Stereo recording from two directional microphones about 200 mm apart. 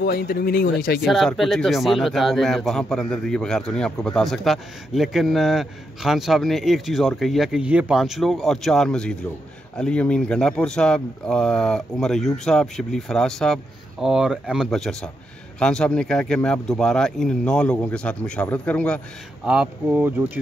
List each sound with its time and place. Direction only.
0.0 s speech: 50° left (ahead or behind)
1.0 s speech: centre (ahead or behind)
19.4 s speech: 5° right (ahead or behind)